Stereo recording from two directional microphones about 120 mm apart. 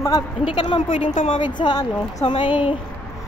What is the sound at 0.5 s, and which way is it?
Speech, 45° left (ahead or behind).